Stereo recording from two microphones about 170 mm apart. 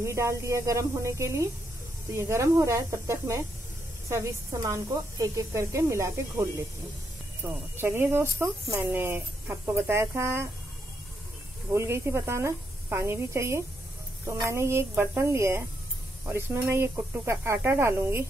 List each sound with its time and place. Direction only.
0.0 s speech: 15° right (ahead or behind)
7.7 s speech: 15° right (ahead or behind)
11.7 s speech: 15° right (ahead or behind)